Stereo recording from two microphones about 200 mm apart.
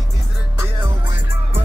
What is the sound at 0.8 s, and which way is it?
Music, 20° right (ahead or behind).